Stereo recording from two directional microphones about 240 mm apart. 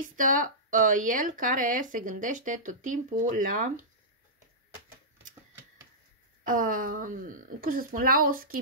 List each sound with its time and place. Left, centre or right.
0.0 s speech: right
6.4 s speech: right